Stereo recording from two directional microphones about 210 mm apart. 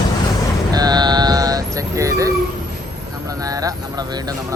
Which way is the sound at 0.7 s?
20° right (ahead or behind).